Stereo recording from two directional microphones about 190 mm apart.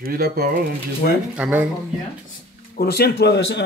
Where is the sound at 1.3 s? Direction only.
10° right (ahead or behind).